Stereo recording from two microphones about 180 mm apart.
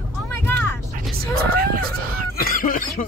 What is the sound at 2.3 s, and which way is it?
Cough, 50° left (ahead or behind).